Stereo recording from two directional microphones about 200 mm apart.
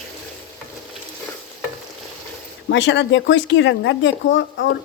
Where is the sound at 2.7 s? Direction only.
65° left (ahead or behind).